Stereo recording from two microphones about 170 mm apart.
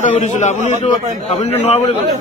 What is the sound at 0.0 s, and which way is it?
A man's voice, 45° left (ahead or behind).